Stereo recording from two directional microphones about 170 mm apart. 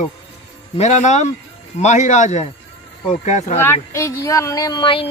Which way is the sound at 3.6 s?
15° left (ahead or behind).